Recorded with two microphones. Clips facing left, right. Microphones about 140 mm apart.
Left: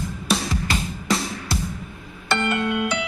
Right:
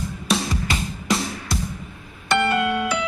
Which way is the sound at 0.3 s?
Centre (ahead or behind).